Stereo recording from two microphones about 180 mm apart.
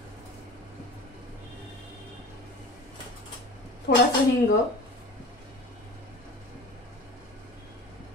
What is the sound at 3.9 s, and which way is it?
Speech, 75° left (ahead or behind).